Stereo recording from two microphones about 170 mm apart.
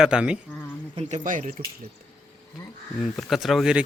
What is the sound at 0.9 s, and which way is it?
Speech, 45° right (ahead or behind).